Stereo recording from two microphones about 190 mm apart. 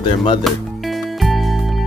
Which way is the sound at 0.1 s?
25° left (ahead or behind).